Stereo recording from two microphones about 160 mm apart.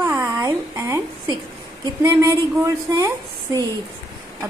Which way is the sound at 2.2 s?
20° right (ahead or behind).